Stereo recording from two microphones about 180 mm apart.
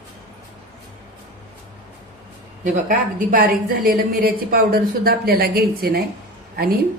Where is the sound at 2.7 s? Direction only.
50° right (ahead or behind).